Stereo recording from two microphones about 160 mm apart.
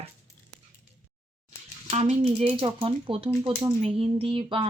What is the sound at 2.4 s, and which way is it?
Speech, 35° right (ahead or behind).